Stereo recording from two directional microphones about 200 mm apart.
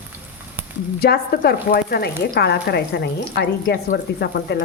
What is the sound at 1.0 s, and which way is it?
Speech, 50° left (ahead or behind).